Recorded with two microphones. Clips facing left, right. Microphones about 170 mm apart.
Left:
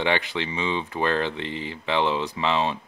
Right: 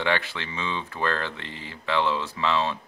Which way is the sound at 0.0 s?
20° left (ahead or behind).